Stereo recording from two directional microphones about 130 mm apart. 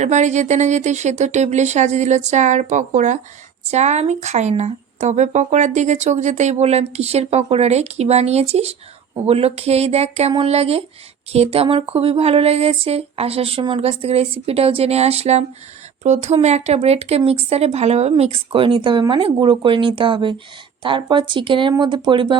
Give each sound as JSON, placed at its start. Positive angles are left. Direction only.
{"t": 0.0, "sound": "speech", "side_deg": -65}
{"t": 3.7, "sound": "speech", "side_deg": -60}